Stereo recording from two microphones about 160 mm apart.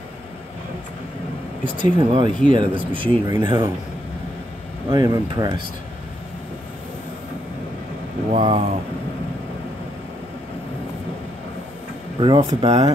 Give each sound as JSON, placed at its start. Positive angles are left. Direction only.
{"t": 1.6, "sound": "speech", "side_deg": -30}
{"t": 4.8, "sound": "speech", "side_deg": -25}
{"t": 8.3, "sound": "speech", "side_deg": -45}
{"t": 12.2, "sound": "speech", "side_deg": -30}